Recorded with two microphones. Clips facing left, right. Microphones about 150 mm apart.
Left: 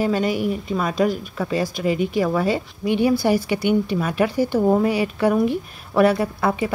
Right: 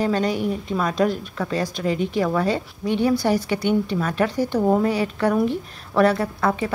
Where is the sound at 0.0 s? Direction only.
5° left (ahead or behind).